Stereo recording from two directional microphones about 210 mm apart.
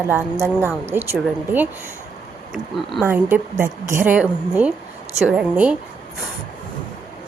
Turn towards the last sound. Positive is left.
turn(degrees=-5)  # may be behind; listen again after turning